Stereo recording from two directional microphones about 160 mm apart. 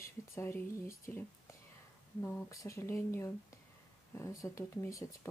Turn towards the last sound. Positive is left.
turn(degrees=20)  # may be behind; listen again after turning